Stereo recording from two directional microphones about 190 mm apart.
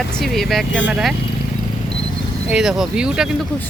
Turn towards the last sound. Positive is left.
turn(degrees=-5)  # may be behind; listen again after turning